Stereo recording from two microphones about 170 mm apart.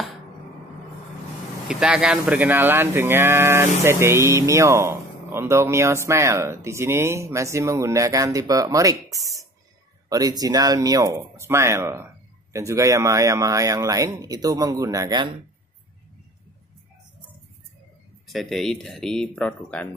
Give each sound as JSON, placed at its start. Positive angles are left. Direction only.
{"t": 1.7, "sound": "speech", "side_deg": -5}
{"t": 18.2, "sound": "speech", "side_deg": 0}